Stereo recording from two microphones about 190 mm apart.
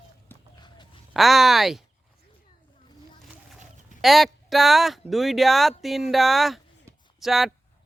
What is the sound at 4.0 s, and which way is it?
Speech, centre (ahead or behind).